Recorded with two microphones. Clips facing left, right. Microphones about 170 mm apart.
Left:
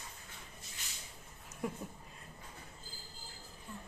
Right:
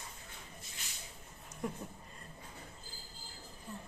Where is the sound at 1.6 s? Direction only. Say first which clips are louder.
Even; 5° left (ahead or behind).